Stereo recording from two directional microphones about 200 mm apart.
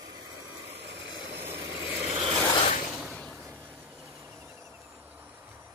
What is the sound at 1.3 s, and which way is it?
Vehicle, 10° right (ahead or behind).